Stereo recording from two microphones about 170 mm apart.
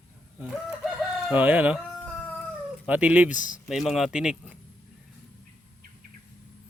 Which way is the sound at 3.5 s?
Centre (ahead or behind).